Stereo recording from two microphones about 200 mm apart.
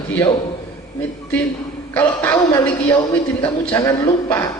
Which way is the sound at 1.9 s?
10° left (ahead or behind).